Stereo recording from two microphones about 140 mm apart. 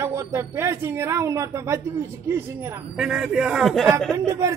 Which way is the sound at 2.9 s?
5° right (ahead or behind).